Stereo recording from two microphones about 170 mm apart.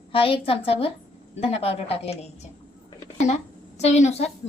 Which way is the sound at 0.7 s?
35° left (ahead or behind).